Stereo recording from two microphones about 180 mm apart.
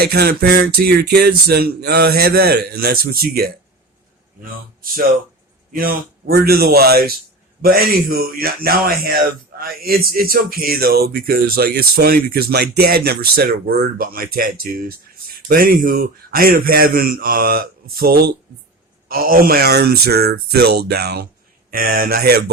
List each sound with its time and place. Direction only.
0.0 s speech: 60° right (ahead or behind)
5.7 s speech: 55° right (ahead or behind)